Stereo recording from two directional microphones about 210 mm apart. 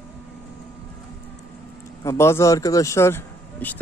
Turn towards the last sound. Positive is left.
turn(degrees=10)  # may be behind; listen again after turning